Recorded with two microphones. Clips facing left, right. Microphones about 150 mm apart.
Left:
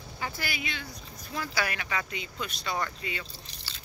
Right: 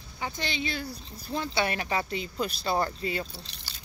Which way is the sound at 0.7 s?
35° right (ahead or behind).